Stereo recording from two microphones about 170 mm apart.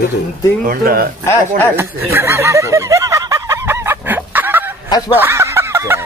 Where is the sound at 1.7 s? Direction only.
15° right (ahead or behind).